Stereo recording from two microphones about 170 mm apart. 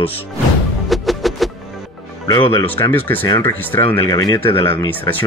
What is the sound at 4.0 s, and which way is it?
Speech, 20° left (ahead or behind).